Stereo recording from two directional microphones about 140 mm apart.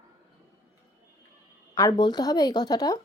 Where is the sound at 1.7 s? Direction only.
30° left (ahead or behind).